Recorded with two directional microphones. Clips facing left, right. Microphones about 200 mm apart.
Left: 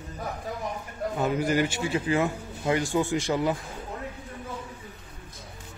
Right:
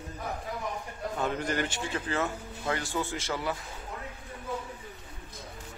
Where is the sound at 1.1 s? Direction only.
10° left (ahead or behind).